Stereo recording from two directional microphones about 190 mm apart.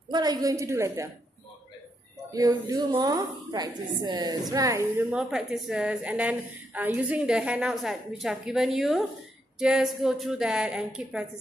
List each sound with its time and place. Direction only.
0.1 s a woman's voice: 20° right (ahead or behind)
2.3 s a woman's voice: 20° right (ahead or behind)